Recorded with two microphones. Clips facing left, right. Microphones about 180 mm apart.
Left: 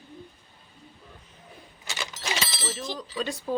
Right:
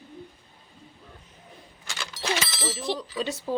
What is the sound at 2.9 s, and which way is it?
Speech, 70° right (ahead or behind).